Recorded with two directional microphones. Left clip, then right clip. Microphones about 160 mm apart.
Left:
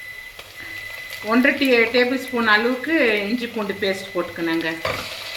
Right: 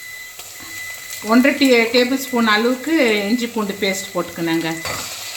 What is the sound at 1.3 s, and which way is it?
Speech, 90° right.